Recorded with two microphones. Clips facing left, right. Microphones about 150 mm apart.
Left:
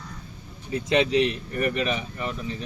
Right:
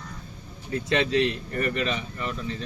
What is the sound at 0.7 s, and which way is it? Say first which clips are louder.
Speech: left 2 dB; 15° left (ahead or behind).